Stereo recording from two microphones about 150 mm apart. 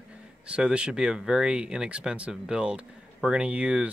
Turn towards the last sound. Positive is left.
turn(degrees=-10)  # may be behind; listen again after turning